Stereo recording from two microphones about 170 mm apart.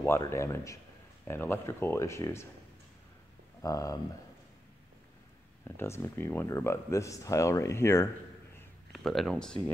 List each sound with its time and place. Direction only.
0.0 s speech: 15° left (ahead or behind)
3.6 s speech: 20° left (ahead or behind)
5.8 s speech: 15° left (ahead or behind)
8.9 s speech: centre (ahead or behind)